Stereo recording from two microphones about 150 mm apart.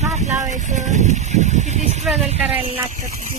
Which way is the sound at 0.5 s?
55° right (ahead or behind).